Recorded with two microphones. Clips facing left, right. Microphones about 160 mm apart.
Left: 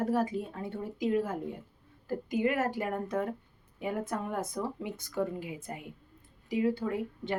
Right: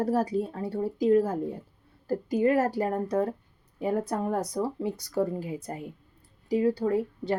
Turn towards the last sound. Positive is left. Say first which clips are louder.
# right 6 dB
turn(degrees=-35)  # may be behind; listen again after turning